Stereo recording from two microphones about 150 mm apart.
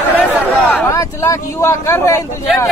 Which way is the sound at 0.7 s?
20° left (ahead or behind).